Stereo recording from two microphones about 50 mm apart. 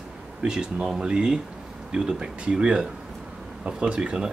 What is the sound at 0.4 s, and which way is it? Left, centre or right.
Speech, centre.